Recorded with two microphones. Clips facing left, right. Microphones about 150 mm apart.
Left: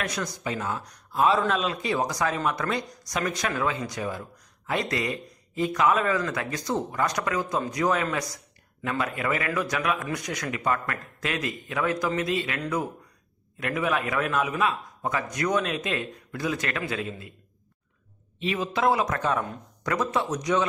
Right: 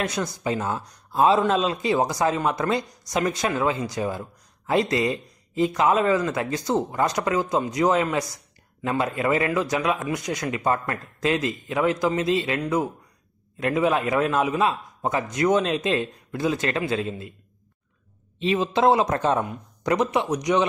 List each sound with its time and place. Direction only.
0.0 s speech: 25° right (ahead or behind)
18.4 s speech: 25° right (ahead or behind)
19.4 s speech: 20° right (ahead or behind)